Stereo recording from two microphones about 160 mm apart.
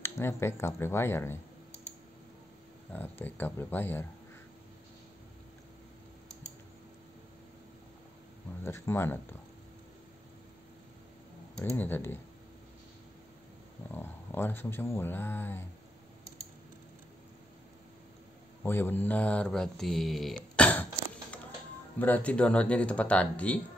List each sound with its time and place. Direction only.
0.0 s speech: 15° left (ahead or behind)
2.9 s speech: 10° left (ahead or behind)
8.6 s speech: 15° left (ahead or behind)
11.6 s speech: 15° left (ahead or behind)
13.9 s speech: 15° left (ahead or behind)
18.6 s speech: 15° left (ahead or behind)
21.9 s speech: 10° left (ahead or behind)